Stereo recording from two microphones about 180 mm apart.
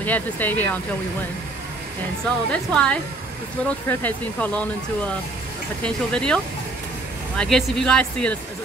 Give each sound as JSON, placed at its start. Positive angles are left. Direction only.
{"t": 0.0, "sound": "speech", "side_deg": 10}
{"t": 2.5, "sound": "speech", "side_deg": 5}
{"t": 5.9, "sound": "speech", "side_deg": 5}